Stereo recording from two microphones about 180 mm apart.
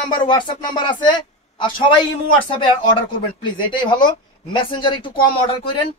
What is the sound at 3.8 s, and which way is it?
A man's voice, 25° left (ahead or behind).